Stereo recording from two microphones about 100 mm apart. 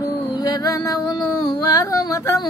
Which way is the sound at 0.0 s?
40° left (ahead or behind).